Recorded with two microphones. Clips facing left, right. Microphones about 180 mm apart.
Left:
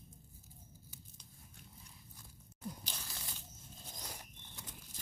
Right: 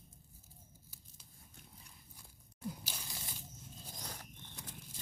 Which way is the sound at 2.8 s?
10° right (ahead or behind).